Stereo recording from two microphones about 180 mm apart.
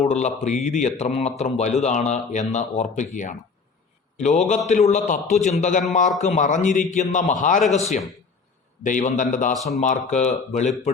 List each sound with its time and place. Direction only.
0.0 s a man's voice: 40° left (ahead or behind)